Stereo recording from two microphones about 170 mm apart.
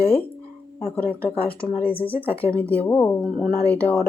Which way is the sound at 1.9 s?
35° left (ahead or behind).